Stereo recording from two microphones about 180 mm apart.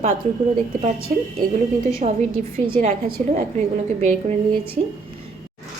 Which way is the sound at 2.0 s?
35° right (ahead or behind).